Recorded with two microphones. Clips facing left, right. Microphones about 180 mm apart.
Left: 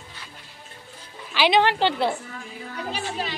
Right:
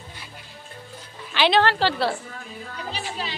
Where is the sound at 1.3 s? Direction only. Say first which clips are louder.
Even; 10° left (ahead or behind).